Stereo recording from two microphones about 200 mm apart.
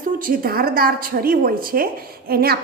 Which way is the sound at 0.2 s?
45° right (ahead or behind).